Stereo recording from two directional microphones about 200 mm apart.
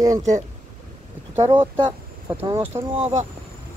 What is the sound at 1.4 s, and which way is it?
Speech, 20° right (ahead or behind).